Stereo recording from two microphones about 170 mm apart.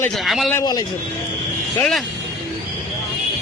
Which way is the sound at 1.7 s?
5° left (ahead or behind).